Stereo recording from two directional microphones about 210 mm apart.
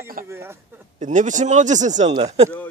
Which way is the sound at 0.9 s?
35° right (ahead or behind).